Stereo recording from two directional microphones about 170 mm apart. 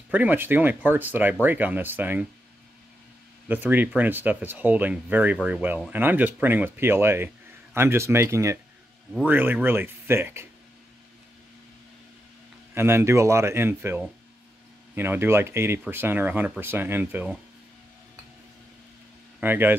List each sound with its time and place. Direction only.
0.1 s speech: 10° right (ahead or behind)
3.4 s speech: 10° right (ahead or behind)
12.7 s speech: 15° right (ahead or behind)
19.4 s speech: 10° right (ahead or behind)